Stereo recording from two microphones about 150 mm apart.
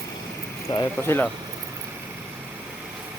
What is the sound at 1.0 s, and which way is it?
Speech, 15° left (ahead or behind).